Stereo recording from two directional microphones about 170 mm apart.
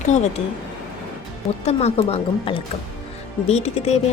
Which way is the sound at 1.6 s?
40° left (ahead or behind).